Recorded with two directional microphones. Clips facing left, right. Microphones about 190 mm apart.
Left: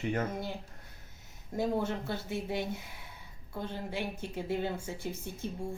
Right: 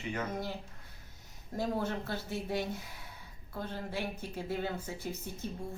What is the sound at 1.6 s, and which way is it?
Speech, 20° left (ahead or behind).